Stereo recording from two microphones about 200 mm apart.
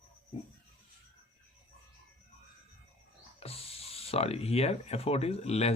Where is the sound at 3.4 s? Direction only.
30° left (ahead or behind).